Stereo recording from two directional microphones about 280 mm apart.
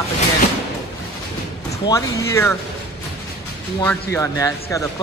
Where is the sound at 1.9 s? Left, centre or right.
Centre.